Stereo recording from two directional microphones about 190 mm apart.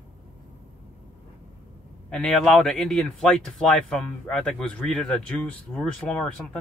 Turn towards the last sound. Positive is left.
turn(degrees=5)  # may be behind; listen again after turning